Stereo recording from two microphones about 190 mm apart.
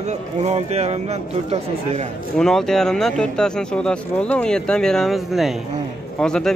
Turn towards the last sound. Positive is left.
turn(degrees=5)  # may be behind; listen again after turning